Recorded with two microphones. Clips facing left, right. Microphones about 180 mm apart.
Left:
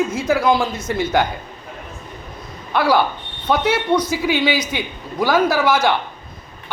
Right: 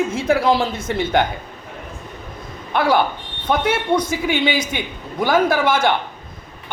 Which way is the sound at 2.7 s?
50° right (ahead or behind).